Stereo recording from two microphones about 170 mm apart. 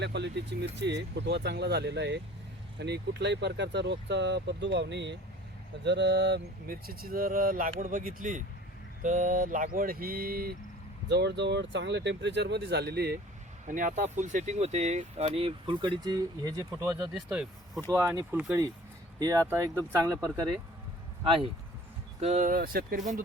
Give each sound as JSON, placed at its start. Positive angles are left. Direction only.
{"t": 0.0, "sound": "speech", "side_deg": -85}
{"t": 11.1, "sound": "speech", "side_deg": -90}
{"t": 13.7, "sound": "speech", "side_deg": -50}
{"t": 17.2, "sound": "speech", "side_deg": -5}
{"t": 17.9, "sound": "speech", "side_deg": -15}
{"t": 19.2, "sound": "speech", "side_deg": -20}
{"t": 22.2, "sound": "speech", "side_deg": -45}